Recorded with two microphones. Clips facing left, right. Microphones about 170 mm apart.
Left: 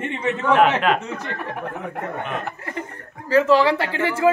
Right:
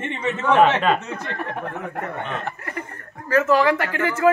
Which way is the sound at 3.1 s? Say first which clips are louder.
Left 2 dB; 15° left (ahead or behind).